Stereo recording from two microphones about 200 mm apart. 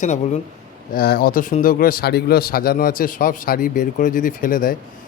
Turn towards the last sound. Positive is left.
turn(degrees=45)  # may be behind; listen again after turning